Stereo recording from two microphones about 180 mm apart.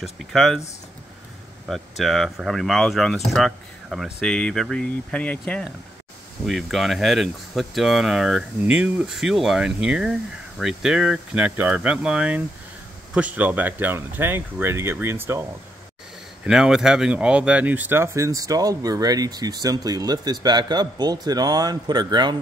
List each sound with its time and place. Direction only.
0.0 s speech: centre (ahead or behind)
1.7 s speech: centre (ahead or behind)
16.4 s speech: 5° right (ahead or behind); by 22.4 s 25° right (ahead or behind)